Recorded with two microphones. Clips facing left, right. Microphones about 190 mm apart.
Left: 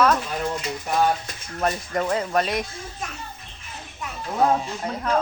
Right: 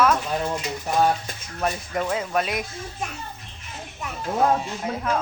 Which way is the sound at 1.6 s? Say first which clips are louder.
Left 1 dB; centre (ahead or behind).